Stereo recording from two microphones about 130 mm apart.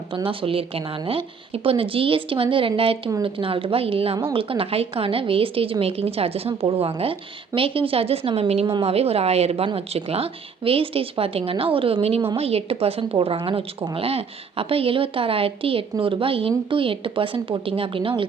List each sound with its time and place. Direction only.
0.1 s speech: 45° right (ahead or behind)